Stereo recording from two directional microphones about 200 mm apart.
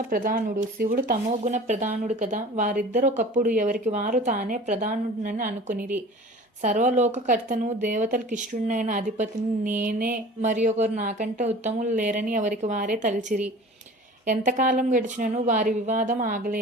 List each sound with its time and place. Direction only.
0.1 s speech: 45° right (ahead or behind)